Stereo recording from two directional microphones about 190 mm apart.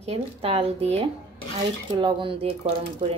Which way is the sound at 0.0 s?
30° right (ahead or behind).